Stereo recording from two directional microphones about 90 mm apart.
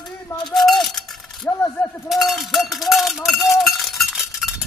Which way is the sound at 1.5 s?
20° left (ahead or behind).